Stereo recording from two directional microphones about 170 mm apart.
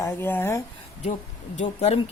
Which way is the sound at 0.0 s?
15° left (ahead or behind).